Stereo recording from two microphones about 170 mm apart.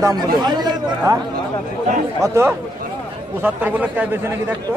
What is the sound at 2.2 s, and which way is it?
A man's voice, 15° right (ahead or behind).